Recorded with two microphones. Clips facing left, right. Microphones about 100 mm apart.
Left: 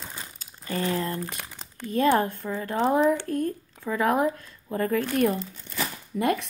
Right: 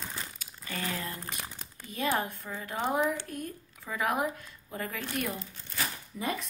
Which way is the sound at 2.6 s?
35° left (ahead or behind).